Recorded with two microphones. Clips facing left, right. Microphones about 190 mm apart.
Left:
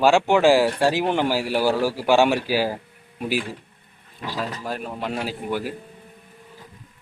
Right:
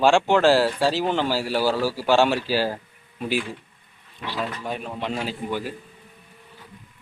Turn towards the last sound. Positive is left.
turn(degrees=10)  # may be behind; listen again after turning